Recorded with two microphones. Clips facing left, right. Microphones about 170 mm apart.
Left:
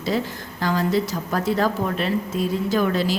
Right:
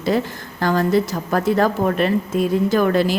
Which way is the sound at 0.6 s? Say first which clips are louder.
Right 4 dB; 50° right (ahead or behind).